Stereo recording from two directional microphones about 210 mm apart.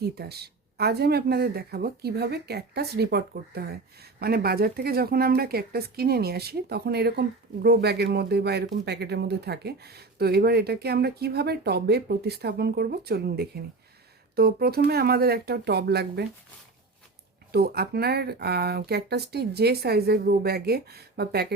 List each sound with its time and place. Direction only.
0.0 s speech: 50° right (ahead or behind)
17.5 s speech: 50° right (ahead or behind)